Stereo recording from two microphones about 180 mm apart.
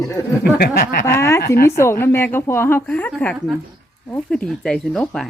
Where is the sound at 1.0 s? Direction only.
15° left (ahead or behind).